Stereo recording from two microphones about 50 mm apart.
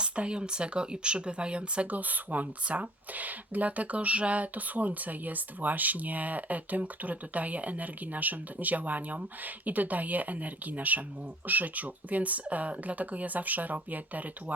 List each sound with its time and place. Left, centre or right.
0.0 s speech: centre